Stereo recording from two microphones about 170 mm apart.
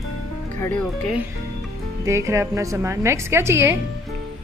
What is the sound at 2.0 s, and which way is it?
A woman's voice, 20° right (ahead or behind).